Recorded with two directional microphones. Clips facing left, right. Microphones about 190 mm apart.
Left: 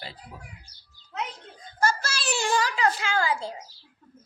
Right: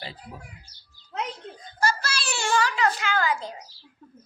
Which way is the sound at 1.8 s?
45° left (ahead or behind).